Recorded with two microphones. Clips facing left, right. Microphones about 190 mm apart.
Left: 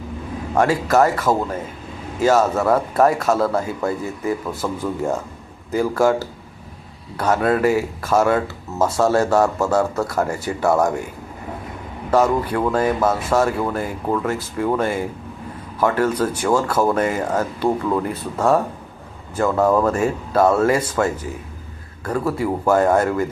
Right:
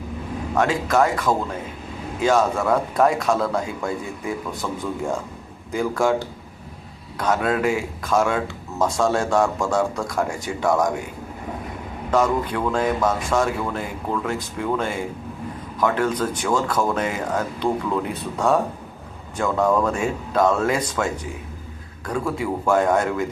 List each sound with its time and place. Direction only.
0.5 s speech: 10° left (ahead or behind)
1.3 s speech: 20° left (ahead or behind)
2.2 s speech: 5° left (ahead or behind)
5.7 s speech: 5° left (ahead or behind)
12.1 s a man's voice: 10° left (ahead or behind)